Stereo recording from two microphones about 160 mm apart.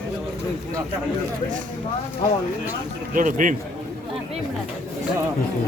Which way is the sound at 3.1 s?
55° right (ahead or behind).